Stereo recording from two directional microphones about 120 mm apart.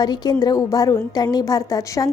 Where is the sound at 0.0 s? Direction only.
35° left (ahead or behind).